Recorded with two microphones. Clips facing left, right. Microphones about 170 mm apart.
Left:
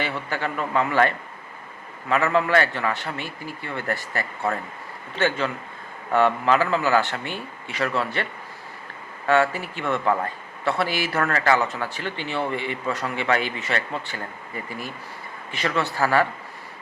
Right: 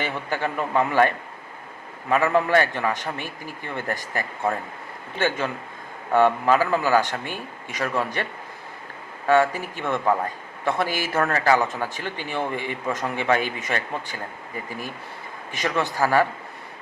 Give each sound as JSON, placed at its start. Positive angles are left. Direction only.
{"t": 0.0, "sound": "a man's voice", "side_deg": -15}
{"t": 10.8, "sound": "speech", "side_deg": -45}
{"t": 11.1, "sound": "a man's voice", "side_deg": -20}
{"t": 15.6, "sound": "a man's voice", "side_deg": -15}